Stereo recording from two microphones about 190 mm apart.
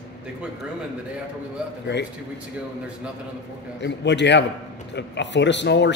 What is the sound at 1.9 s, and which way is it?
Speech, 65° left (ahead or behind).